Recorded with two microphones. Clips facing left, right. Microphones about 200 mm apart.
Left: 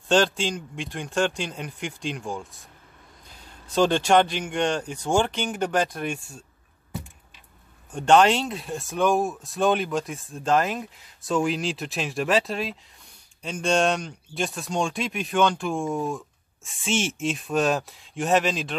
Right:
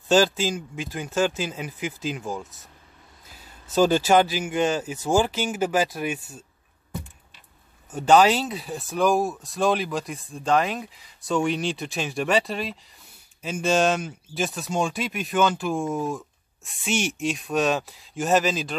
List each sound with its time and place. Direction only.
0.1 s speech: 5° right (ahead or behind)
7.9 s speech: 5° right (ahead or behind)